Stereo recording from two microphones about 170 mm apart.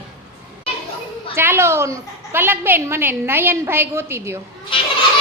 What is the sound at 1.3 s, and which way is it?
A woman's voice, 15° right (ahead or behind).